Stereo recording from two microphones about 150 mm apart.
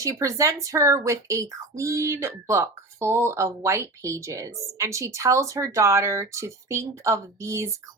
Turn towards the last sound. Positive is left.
turn(degrees=-20)  # may be behind; listen again after turning